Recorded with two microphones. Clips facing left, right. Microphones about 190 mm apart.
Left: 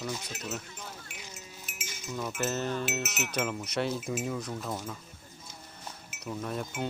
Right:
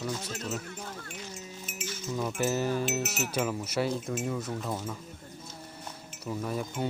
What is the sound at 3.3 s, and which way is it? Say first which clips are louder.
Speech: right 1 dB; centre (ahead or behind).